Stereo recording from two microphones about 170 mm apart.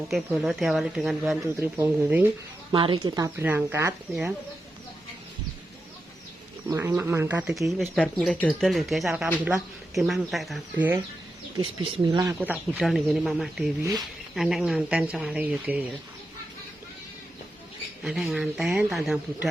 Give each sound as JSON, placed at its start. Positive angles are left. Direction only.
{"t": 0.1, "sound": "speech", "side_deg": 0}
{"t": 1.5, "sound": "speech", "side_deg": -15}
{"t": 2.7, "sound": "speech", "side_deg": -30}
{"t": 3.2, "sound": "speech", "side_deg": -15}
{"t": 6.7, "sound": "speech", "side_deg": -15}
{"t": 11.5, "sound": "speech", "side_deg": -25}
{"t": 12.3, "sound": "speech", "side_deg": -10}
{"t": 18.0, "sound": "speech", "side_deg": 0}